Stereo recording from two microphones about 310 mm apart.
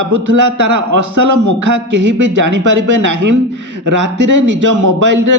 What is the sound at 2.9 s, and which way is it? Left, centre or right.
A man's voice, right.